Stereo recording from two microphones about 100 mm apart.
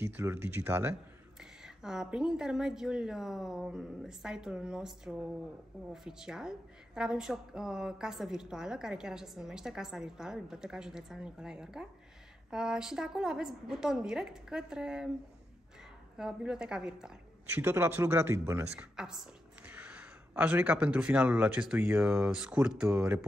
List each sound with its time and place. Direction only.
0.0 s speech: 25° right (ahead or behind)
1.4 s a woman's voice: 5° right (ahead or behind)
16.2 s a woman's voice: 5° right (ahead or behind)
17.6 s speech: 25° right (ahead or behind)
18.8 s a woman's voice: 5° right (ahead or behind)